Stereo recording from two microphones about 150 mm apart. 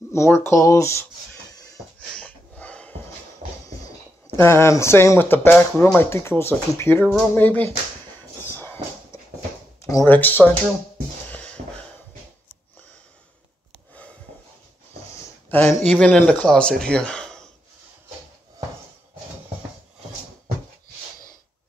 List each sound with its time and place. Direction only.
0.1 s speech: 15° left (ahead or behind)
2.1 s a sound: 10° left (ahead or behind)
3.6 s speech: 20° left (ahead or behind)
8.4 s dog: 15° left (ahead or behind)
9.8 s speech: 15° left (ahead or behind)
11.2 s a sound: 10° left (ahead or behind)
15.5 s speech: 10° left (ahead or behind)